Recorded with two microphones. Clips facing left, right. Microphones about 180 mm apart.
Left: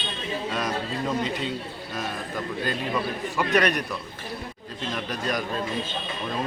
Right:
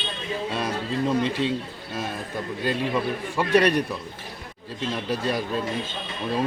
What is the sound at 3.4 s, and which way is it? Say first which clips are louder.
Speech: right 3 dB; 30° right (ahead or behind).